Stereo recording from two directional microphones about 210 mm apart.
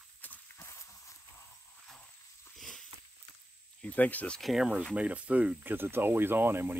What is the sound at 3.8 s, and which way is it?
Speech, 5° left (ahead or behind).